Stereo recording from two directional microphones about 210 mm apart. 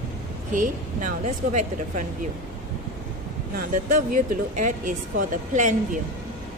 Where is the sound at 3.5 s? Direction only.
45° right (ahead or behind).